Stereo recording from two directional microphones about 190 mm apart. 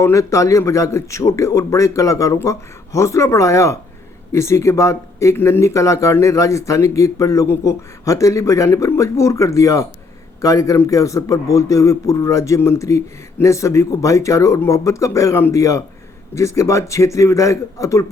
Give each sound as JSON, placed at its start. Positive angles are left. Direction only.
{"t": 0.0, "sound": "speech", "side_deg": 15}